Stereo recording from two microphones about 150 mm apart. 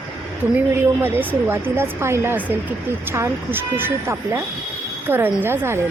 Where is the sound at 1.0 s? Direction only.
15° right (ahead or behind).